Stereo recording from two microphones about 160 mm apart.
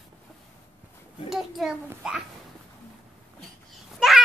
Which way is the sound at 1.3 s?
Centre (ahead or behind).